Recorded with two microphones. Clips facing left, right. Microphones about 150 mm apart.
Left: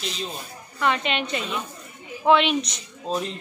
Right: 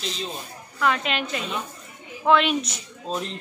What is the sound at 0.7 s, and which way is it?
Speech, centre (ahead or behind).